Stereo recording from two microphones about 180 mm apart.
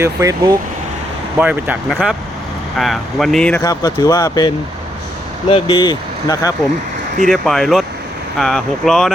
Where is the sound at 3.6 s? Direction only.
20° left (ahead or behind).